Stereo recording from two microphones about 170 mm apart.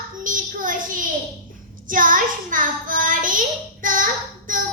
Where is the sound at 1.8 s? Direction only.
50° right (ahead or behind).